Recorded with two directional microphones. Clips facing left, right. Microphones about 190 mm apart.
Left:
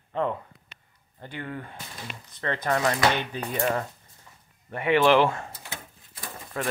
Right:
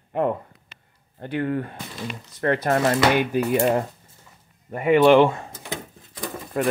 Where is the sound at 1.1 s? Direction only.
65° right (ahead or behind).